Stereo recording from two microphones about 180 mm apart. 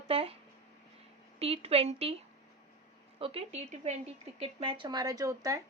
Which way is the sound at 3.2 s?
30° right (ahead or behind).